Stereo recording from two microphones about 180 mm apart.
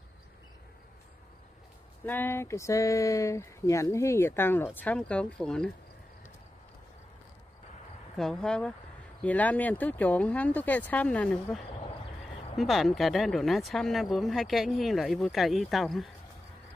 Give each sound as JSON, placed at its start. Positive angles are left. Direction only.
{"t": 2.0, "sound": "speech", "side_deg": 10}
{"t": 8.2, "sound": "speech", "side_deg": 5}